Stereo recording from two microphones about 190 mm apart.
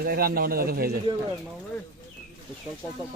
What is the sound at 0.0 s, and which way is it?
Speech, 55° right (ahead or behind).